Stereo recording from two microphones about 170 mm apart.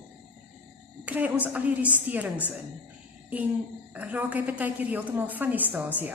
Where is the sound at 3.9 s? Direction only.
10° right (ahead or behind).